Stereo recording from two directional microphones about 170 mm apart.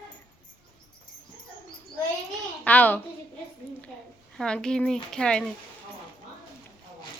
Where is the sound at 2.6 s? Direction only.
10° left (ahead or behind).